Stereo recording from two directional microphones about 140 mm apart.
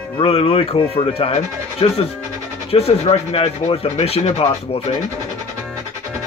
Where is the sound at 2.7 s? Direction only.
50° left (ahead or behind).